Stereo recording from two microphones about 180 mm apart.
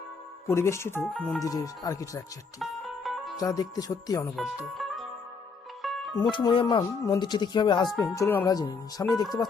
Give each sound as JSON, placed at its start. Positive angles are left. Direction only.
{"t": 0.4, "sound": "speech", "side_deg": 15}
{"t": 1.1, "sound": "speech", "side_deg": 0}
{"t": 1.4, "sound": "speech", "side_deg": 20}
{"t": 2.6, "sound": "music", "side_deg": 0}
{"t": 3.3, "sound": "speech", "side_deg": 20}
{"t": 4.4, "sound": "speech", "side_deg": 0}
{"t": 5.8, "sound": "music", "side_deg": 0}
{"t": 6.3, "sound": "speech", "side_deg": 25}